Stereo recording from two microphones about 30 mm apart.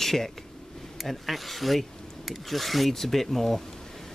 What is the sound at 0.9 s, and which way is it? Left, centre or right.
Speech, centre.